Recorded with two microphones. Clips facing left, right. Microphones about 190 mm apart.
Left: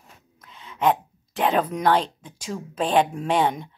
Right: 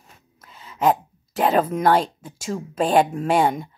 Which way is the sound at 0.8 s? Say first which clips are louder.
Right 2 dB; 40° right (ahead or behind).